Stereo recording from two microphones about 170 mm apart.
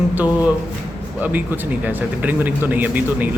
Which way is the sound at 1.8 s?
10° right (ahead or behind).